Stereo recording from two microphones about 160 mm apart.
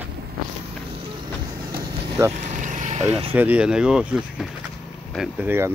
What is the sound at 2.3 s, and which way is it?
Vehicle, 50° right (ahead or behind).